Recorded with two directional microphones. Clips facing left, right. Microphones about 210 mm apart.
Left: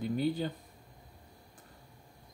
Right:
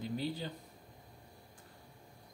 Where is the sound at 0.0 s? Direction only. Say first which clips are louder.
Left 7 dB; 55° left (ahead or behind).